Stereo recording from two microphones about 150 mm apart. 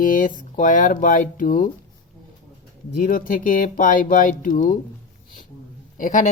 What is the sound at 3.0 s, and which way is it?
Speech, 65° left (ahead or behind).